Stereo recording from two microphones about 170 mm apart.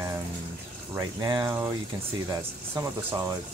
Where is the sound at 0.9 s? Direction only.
25° right (ahead or behind).